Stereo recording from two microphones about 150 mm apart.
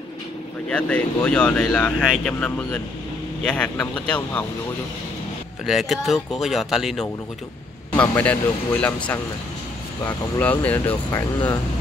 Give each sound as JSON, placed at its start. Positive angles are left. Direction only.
{"t": 0.7, "sound": "speech", "side_deg": 5}
{"t": 5.7, "sound": "speech", "side_deg": 0}
{"t": 7.9, "sound": "speech", "side_deg": 10}